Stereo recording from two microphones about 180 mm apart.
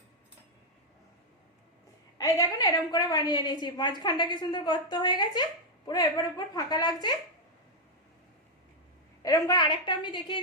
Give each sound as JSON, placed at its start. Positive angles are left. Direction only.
{"t": 2.1, "sound": "a woman's voice", "side_deg": 20}
{"t": 9.2, "sound": "a woman's voice", "side_deg": 20}